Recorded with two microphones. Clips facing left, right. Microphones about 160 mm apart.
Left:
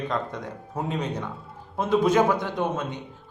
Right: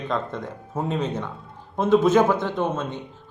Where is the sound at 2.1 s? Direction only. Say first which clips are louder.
Right 2 dB; 15° left (ahead or behind).